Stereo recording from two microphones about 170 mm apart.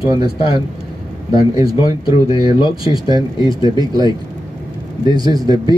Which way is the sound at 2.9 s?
25° right (ahead or behind).